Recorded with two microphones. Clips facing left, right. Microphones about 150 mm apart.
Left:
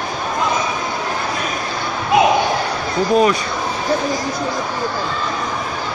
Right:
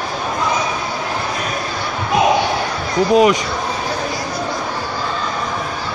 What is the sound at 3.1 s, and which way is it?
Speech, 15° right (ahead or behind).